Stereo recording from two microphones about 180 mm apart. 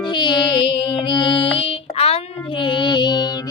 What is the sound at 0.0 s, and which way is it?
Music, 25° left (ahead or behind).